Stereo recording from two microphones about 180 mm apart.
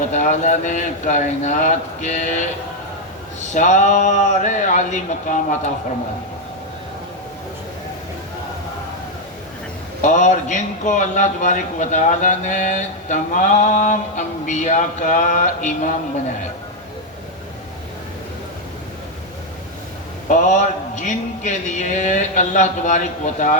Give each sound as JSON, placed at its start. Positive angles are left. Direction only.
{"t": 0.1, "sound": "a man's voice", "side_deg": 40}
{"t": 3.5, "sound": "a man's voice", "side_deg": 40}
{"t": 10.0, "sound": "a man's voice", "side_deg": 40}
{"t": 20.2, "sound": "a man's voice", "side_deg": 45}